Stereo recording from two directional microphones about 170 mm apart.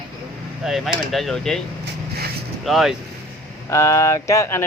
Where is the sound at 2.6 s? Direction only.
Centre (ahead or behind).